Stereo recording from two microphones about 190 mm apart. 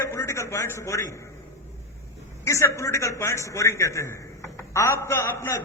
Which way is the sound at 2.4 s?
15° left (ahead or behind).